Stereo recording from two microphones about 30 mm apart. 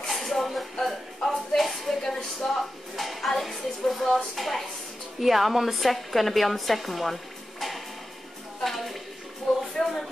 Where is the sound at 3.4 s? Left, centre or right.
Centre.